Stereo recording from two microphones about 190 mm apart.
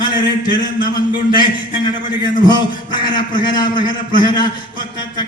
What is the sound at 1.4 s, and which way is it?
A man's voice, 25° left (ahead or behind).